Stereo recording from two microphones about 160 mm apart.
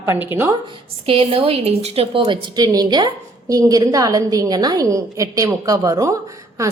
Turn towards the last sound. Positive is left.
turn(degrees=-20)  # may be behind; listen again after turning